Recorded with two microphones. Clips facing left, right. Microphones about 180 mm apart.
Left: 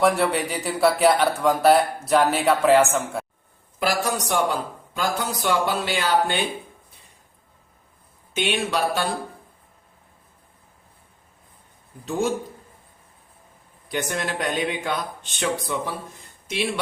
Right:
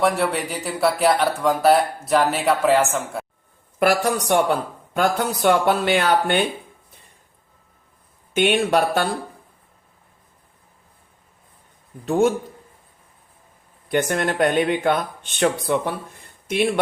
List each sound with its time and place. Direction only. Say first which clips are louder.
0.0 s speech: even; centre (ahead or behind)
3.8 s speech: right 5 dB; 60° right (ahead or behind)
8.3 s speech: right 6 dB; 55° right (ahead or behind)
12.0 s speech: right 7 dB; 55° right (ahead or behind)
13.8 s speech: right 6 dB; 55° right (ahead or behind)